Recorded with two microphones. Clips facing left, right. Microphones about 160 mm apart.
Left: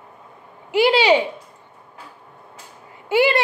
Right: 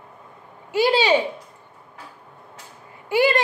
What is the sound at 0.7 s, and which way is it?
Speech, 15° left (ahead or behind).